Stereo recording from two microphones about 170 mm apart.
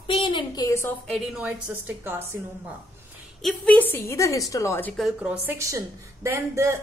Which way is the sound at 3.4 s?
5° left (ahead or behind).